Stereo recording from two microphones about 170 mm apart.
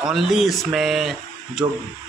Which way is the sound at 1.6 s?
20° right (ahead or behind).